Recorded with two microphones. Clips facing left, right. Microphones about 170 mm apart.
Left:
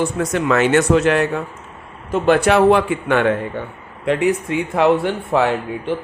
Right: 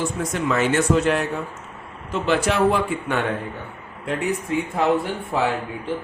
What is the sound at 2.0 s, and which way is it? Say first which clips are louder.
Speech: left 7 dB; 50° left (ahead or behind).